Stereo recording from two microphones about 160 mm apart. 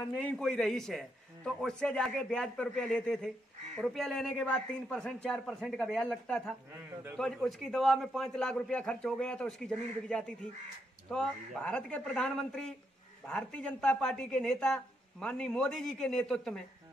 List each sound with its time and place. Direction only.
0.2 s a man's voice: 5° left (ahead or behind)